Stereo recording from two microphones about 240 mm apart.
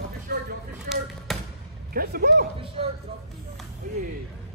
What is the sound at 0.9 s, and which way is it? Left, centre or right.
Speech, right.